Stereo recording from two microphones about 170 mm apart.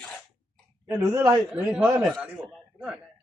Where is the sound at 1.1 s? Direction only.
5° right (ahead or behind).